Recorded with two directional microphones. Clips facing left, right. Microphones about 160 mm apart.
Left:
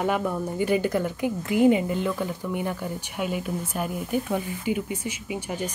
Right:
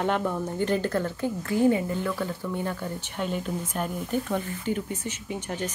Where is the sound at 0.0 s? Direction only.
5° left (ahead or behind).